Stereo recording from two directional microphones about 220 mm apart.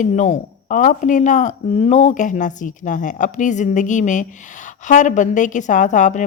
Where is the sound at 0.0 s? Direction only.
30° left (ahead or behind).